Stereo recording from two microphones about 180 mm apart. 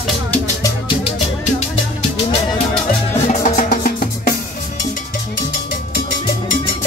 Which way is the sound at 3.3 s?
45° left (ahead or behind).